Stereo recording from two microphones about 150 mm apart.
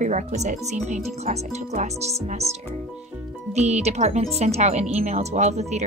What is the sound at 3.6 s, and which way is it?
A woman's voice, 45° right (ahead or behind).